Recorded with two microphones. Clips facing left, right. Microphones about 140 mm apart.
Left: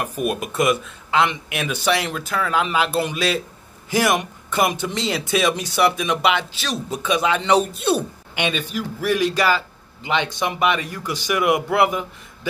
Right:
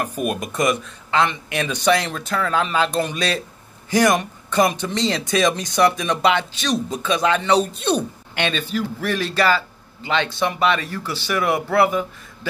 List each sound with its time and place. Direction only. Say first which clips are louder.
0.2 s speech: left 1 dB; 5° left (ahead or behind)